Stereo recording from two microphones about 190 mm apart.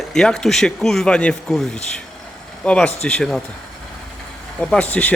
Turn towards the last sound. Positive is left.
turn(degrees=10)  # may be behind; listen again after turning